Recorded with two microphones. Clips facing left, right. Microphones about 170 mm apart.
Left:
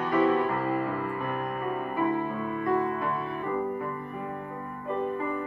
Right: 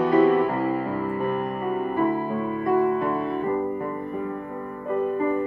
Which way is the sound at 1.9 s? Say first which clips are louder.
Right 2 dB; 35° right (ahead or behind).